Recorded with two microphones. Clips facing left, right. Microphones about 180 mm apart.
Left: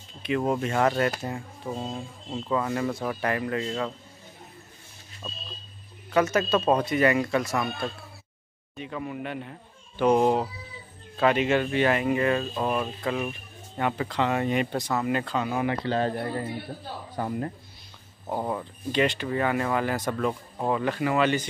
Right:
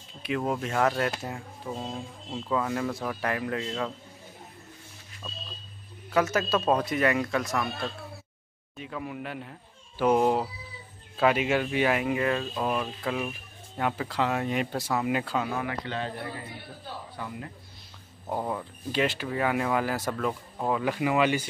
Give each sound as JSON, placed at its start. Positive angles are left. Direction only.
{"t": 0.4, "sound": "speech", "side_deg": 0}
{"t": 5.2, "sound": "vehicle", "side_deg": 20}
{"t": 6.1, "sound": "speech", "side_deg": 0}
{"t": 8.7, "sound": "speech", "side_deg": 0}
{"t": 15.5, "sound": "a man's voice", "side_deg": 25}
{"t": 18.2, "sound": "speech", "side_deg": 5}
{"t": 20.9, "sound": "speech", "side_deg": -10}